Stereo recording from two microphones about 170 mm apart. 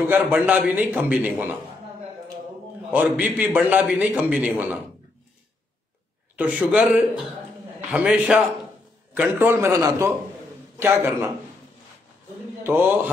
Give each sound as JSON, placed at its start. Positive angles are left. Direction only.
{"t": 0.1, "sound": "a man's voice", "side_deg": -10}
{"t": 2.9, "sound": "a man's voice", "side_deg": -10}
{"t": 6.3, "sound": "a man's voice", "side_deg": -10}
{"t": 12.6, "sound": "a man's voice", "side_deg": -10}